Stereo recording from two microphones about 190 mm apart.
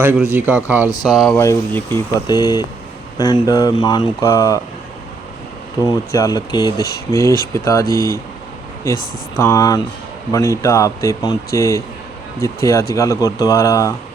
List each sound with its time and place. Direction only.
0.0 s speech: 10° right (ahead or behind)
1.4 s speech: 15° left (ahead or behind)
5.8 s speech: 20° left (ahead or behind)
12.9 s speech: 15° left (ahead or behind)